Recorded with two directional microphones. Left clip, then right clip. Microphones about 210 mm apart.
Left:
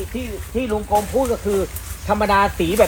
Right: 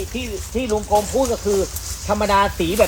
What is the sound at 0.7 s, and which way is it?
Speech, 10° right (ahead or behind).